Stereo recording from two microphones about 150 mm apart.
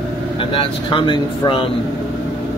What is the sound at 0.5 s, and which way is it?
Speech, 35° left (ahead or behind).